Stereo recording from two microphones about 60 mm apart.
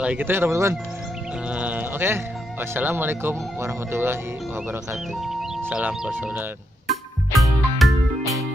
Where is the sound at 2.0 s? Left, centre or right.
Right.